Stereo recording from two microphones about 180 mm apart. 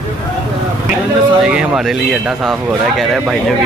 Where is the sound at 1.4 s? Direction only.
5° right (ahead or behind).